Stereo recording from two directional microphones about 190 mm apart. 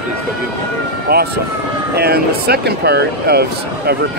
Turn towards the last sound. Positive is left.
turn(degrees=-55)  # may be behind; listen again after turning